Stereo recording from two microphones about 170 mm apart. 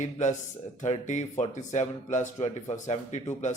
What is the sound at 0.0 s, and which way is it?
Speech, 45° left (ahead or behind).